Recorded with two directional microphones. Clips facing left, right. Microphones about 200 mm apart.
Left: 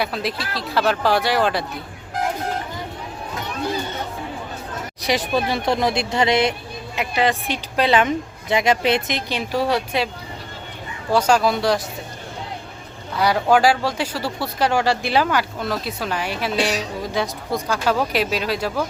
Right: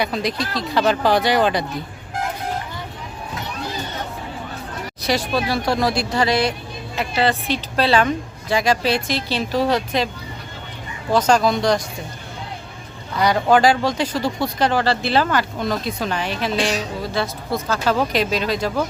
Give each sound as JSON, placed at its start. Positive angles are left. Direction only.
{"t": 0.0, "sound": "speech", "side_deg": 5}
{"t": 5.0, "sound": "speech", "side_deg": 15}
{"t": 11.1, "sound": "speech", "side_deg": 10}
{"t": 13.1, "sound": "speech", "side_deg": 5}